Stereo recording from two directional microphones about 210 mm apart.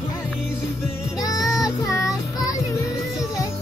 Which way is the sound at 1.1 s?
15° left (ahead or behind).